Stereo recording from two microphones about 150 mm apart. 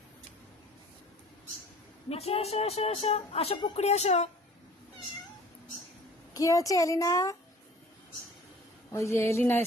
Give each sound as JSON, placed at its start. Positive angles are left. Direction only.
{"t": 2.0, "sound": "speech", "side_deg": 45}
{"t": 6.3, "sound": "a woman's voice", "side_deg": 20}
{"t": 8.9, "sound": "speech", "side_deg": 20}